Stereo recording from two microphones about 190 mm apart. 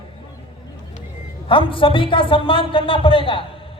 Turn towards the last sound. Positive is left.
turn(degrees=30)  # may be behind; listen again after turning